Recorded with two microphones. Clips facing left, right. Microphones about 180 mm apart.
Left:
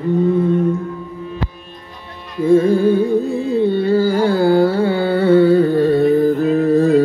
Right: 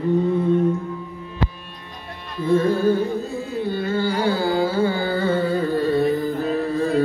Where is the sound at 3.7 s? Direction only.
35° left (ahead or behind); by 6.3 s 60° left (ahead or behind).